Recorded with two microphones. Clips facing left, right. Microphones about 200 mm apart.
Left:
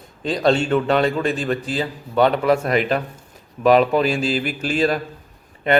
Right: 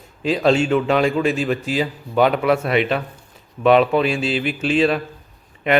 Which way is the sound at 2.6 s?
40° left (ahead or behind).